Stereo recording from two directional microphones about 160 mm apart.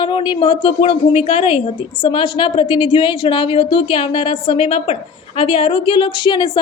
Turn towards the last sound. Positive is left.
turn(degrees=30)  # may be behind; listen again after turning